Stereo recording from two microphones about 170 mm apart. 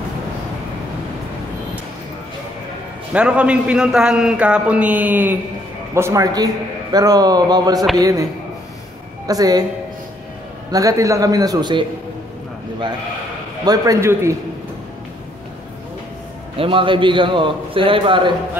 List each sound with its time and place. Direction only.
3.1 s a man's voice: 5° right (ahead or behind)
9.3 s a man's voice: 20° right (ahead or behind)
10.7 s a man's voice: 20° right (ahead or behind)
13.7 s a man's voice: 20° right (ahead or behind)
16.5 s a man's voice: 30° right (ahead or behind)